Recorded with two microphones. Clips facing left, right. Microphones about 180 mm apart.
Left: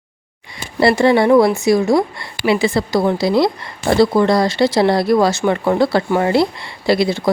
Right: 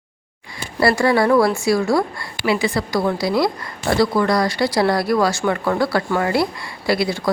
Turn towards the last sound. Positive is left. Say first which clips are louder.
# left 4 dB
turn(degrees=25)  # may be behind; listen again after turning